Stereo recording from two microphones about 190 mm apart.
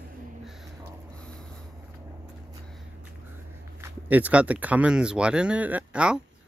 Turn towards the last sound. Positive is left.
turn(degrees=-5)  # may be behind; listen again after turning